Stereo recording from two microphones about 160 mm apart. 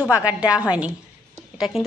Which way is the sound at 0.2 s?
10° right (ahead or behind).